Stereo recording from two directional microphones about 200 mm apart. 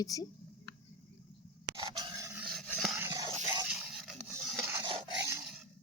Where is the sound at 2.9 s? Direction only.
15° right (ahead or behind).